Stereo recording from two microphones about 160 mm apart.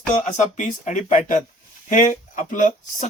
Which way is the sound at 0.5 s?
50° left (ahead or behind).